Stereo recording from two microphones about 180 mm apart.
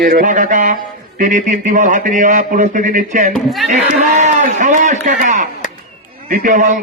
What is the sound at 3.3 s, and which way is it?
Speech, centre (ahead or behind).